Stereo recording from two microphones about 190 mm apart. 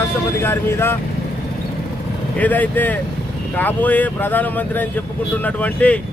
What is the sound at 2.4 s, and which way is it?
Speech, 10° left (ahead or behind).